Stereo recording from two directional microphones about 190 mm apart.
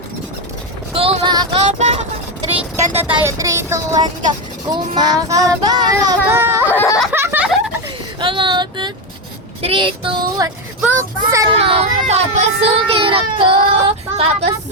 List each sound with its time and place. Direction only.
0.9 s vehicle: 30° right (ahead or behind)
2.8 s speech: 10° right (ahead or behind)
4.3 s child singing: 20° right (ahead or behind)
6.7 s a sound: 15° left (ahead or behind)
7.1 s a sound: 10° right (ahead or behind)
8.2 s a sound: 25° right (ahead or behind)
9.6 s child singing: 30° right (ahead or behind)
10.8 s speech: 10° right (ahead or behind)
11.4 s child singing: 30° right (ahead or behind)
11.9 s speech: 35° right (ahead or behind)